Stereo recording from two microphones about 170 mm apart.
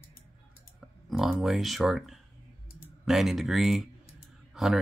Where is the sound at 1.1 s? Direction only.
Centre (ahead or behind).